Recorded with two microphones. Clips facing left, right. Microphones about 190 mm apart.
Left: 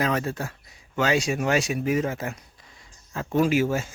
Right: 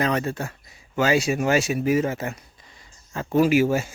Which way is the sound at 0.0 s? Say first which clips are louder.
Right 2 dB; centre (ahead or behind).